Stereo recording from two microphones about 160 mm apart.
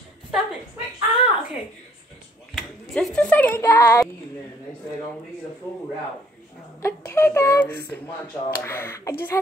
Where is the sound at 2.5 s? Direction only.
Centre (ahead or behind); by 4.1 s 20° left (ahead or behind).